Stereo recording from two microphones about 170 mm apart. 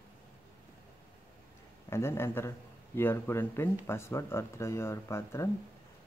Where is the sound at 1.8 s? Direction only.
15° left (ahead or behind).